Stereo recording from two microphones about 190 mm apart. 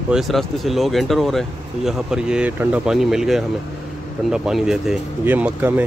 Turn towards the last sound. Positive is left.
turn(degrees=-10)  # may be behind; listen again after turning